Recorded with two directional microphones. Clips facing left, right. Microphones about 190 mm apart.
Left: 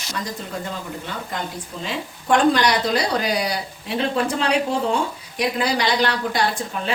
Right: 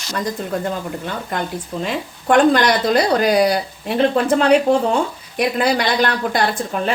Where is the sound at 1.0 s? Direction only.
55° right (ahead or behind).